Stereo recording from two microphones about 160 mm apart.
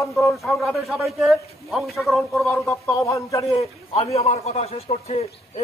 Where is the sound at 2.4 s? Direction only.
15° left (ahead or behind).